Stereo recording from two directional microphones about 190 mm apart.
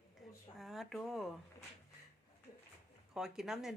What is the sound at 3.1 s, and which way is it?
Speech, 5° right (ahead or behind).